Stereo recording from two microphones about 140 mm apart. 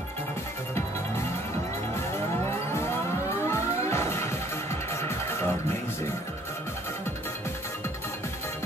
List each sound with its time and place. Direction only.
2.7 s music: 20° left (ahead or behind)